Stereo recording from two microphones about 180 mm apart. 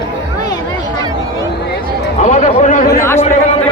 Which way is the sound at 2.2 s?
45° left (ahead or behind).